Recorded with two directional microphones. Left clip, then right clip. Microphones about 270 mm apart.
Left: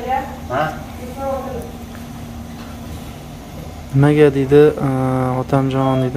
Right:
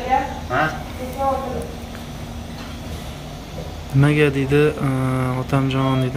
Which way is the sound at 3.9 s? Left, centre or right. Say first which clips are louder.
Left 5 dB; centre.